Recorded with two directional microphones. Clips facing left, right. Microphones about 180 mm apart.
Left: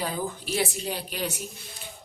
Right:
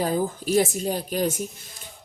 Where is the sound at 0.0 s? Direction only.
45° right (ahead or behind).